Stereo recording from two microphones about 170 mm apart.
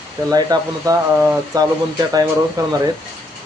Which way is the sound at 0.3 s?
20° right (ahead or behind).